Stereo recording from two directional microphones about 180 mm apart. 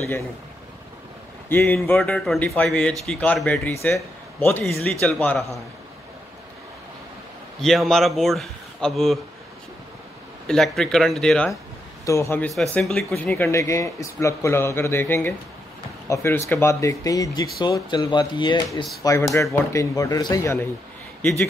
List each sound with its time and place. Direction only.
1.5 s speech: 10° left (ahead or behind)
7.6 s speech: centre (ahead or behind)
10.4 s speech: centre (ahead or behind)
12.1 s speech: 15° left (ahead or behind)
12.7 s speech: 5° left (ahead or behind)